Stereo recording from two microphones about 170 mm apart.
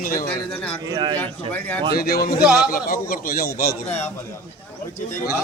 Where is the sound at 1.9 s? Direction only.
65° left (ahead or behind).